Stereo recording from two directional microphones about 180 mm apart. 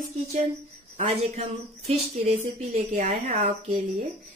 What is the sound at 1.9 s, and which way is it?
A woman's voice, 35° right (ahead or behind).